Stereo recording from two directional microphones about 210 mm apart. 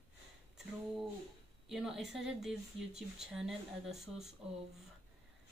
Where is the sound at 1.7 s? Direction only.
Centre (ahead or behind).